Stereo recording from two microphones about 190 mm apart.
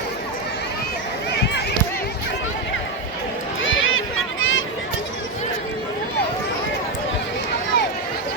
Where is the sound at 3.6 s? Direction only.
90° left.